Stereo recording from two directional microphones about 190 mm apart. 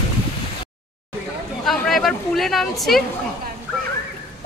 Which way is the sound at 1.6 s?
Centre (ahead or behind).